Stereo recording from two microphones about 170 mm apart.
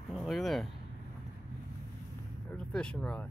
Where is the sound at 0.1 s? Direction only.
Centre (ahead or behind).